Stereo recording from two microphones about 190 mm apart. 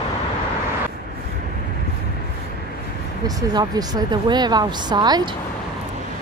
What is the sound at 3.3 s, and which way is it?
A woman's voice, 20° right (ahead or behind).